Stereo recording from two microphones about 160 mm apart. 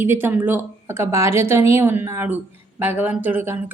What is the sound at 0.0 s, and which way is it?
A woman's voice, 15° right (ahead or behind).